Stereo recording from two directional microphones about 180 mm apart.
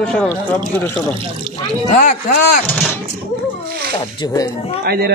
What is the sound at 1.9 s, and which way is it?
Speech, 45° left (ahead or behind).